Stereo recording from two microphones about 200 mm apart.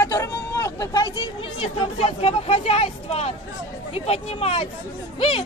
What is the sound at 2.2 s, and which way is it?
Speech, 30° left (ahead or behind).